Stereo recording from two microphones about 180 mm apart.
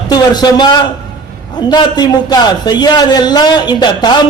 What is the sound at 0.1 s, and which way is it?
A man's voice, 25° left (ahead or behind).